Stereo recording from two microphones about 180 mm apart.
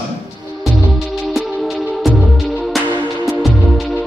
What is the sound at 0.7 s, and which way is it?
Music, centre (ahead or behind).